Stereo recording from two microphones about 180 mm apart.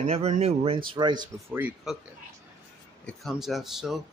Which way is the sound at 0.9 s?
25° right (ahead or behind).